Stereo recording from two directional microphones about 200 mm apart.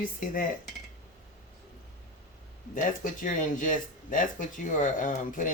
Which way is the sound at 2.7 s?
40° left (ahead or behind).